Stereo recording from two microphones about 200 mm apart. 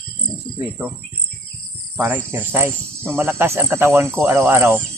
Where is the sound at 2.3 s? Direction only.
10° right (ahead or behind).